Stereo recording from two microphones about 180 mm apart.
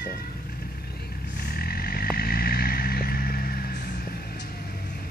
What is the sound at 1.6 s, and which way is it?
Vehicle, 55° left (ahead or behind).